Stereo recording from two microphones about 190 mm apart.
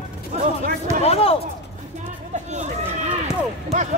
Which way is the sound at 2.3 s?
35° right (ahead or behind).